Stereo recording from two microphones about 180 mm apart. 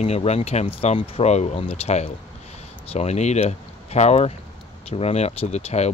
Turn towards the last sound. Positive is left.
turn(degrees=35)  # may be behind; listen again after turning